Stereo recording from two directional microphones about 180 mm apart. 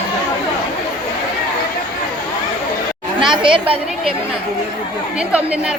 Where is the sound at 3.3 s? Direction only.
25° right (ahead or behind).